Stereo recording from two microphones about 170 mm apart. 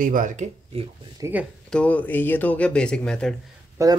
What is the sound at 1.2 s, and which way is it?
Speech, 10° right (ahead or behind).